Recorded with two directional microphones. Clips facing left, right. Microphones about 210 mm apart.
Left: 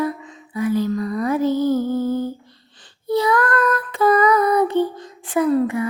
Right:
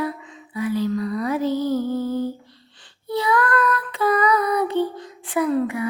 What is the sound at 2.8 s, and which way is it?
Female singing, 40° left (ahead or behind).